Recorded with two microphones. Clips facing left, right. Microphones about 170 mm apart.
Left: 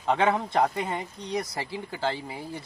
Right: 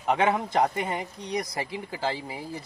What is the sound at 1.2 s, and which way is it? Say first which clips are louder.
Speech: even; 30° left (ahead or behind).